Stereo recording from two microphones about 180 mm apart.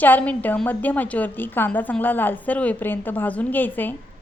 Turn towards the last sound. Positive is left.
turn(degrees=10)  # may be behind; listen again after turning